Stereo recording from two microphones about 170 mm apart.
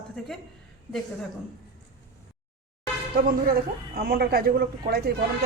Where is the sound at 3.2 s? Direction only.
60° right (ahead or behind).